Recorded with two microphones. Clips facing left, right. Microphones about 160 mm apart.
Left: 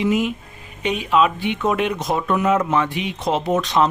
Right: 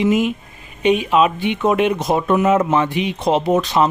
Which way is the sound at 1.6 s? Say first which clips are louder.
Right 5 dB; 20° right (ahead or behind).